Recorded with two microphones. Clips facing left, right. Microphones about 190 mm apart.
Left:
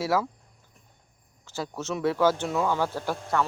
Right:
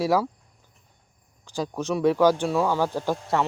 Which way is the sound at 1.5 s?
15° right (ahead or behind).